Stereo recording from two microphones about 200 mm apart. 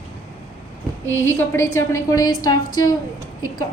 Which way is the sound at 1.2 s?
10° left (ahead or behind).